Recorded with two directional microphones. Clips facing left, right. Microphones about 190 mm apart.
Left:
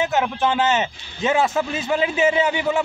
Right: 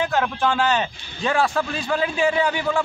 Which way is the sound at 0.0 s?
20° left (ahead or behind).